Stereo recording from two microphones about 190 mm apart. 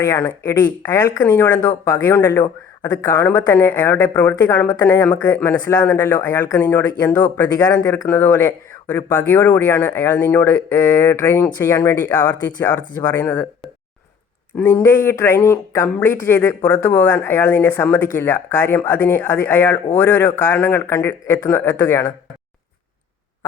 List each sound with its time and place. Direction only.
0.0 s speech: 15° left (ahead or behind)
14.5 s speech: 10° left (ahead or behind)